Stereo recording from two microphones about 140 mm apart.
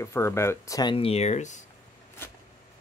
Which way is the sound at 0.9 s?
45° left (ahead or behind).